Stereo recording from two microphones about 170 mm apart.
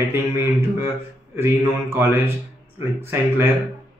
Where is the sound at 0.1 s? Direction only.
15° right (ahead or behind).